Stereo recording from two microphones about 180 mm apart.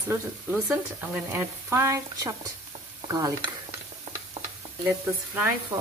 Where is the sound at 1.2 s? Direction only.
15° right (ahead or behind).